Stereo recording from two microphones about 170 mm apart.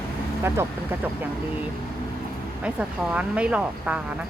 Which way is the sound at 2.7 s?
5° right (ahead or behind).